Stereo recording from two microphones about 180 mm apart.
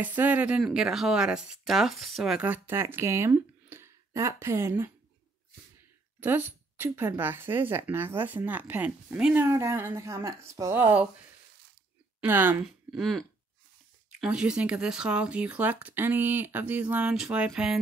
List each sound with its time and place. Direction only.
0.0 s speech: 10° right (ahead or behind)
6.1 s speech: 10° right (ahead or behind)
12.2 s speech: 10° right (ahead or behind)
14.2 s speech: 5° right (ahead or behind)